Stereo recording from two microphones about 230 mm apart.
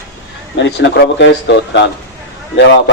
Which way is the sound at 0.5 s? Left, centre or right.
Left.